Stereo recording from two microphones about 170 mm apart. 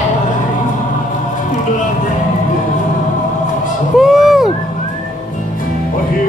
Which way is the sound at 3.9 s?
Centre (ahead or behind).